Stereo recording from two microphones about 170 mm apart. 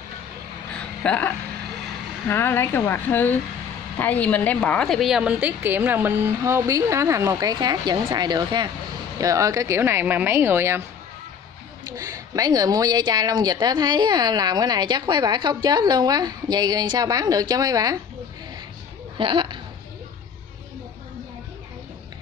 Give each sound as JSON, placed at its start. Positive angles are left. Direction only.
{"t": 0.7, "sound": "a sound", "side_deg": 5}
{"t": 2.2, "sound": "a woman's voice", "side_deg": 15}
{"t": 12.0, "sound": "a woman's voice", "side_deg": -20}
{"t": 19.1, "sound": "speech", "side_deg": -30}